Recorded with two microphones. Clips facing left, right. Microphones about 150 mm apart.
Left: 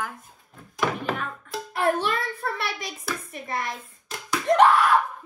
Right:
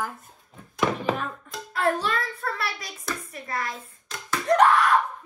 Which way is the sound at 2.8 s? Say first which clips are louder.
Left 2 dB; centre (ahead or behind).